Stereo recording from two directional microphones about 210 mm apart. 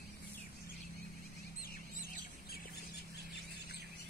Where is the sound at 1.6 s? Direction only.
45° left (ahead or behind).